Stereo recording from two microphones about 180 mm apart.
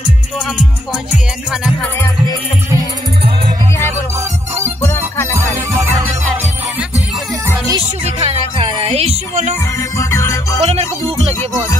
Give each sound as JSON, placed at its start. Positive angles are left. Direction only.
{"t": 4.8, "sound": "music", "side_deg": 15}
{"t": 5.3, "sound": "music", "side_deg": -15}
{"t": 7.4, "sound": "music", "side_deg": -20}
{"t": 8.2, "sound": "music", "side_deg": -35}
{"t": 9.9, "sound": "music", "side_deg": 15}
{"t": 10.6, "sound": "music", "side_deg": -35}